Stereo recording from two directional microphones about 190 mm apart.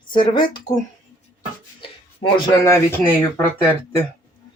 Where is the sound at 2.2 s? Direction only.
25° left (ahead or behind).